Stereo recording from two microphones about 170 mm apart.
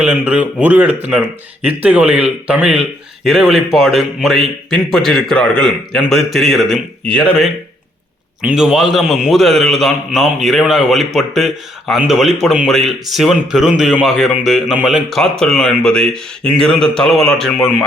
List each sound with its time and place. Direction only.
0.0 s a man's voice: 10° right (ahead or behind)
8.4 s a man's voice: 5° right (ahead or behind)